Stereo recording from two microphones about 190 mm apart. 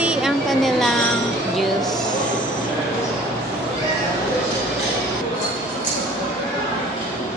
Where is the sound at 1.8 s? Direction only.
20° left (ahead or behind).